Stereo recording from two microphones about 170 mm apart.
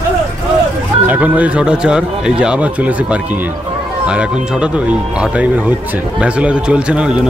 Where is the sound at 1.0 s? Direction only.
10° right (ahead or behind).